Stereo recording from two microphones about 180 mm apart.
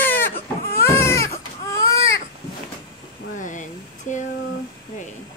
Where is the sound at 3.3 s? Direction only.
45° left (ahead or behind).